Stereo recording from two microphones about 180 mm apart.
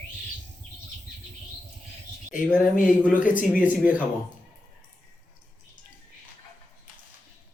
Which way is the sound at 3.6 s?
10° right (ahead or behind).